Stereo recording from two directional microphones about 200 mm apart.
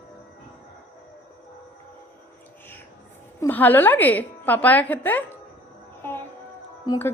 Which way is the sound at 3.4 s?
10° left (ahead or behind).